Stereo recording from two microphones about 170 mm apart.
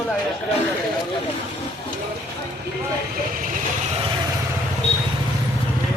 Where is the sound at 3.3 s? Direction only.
55° right (ahead or behind).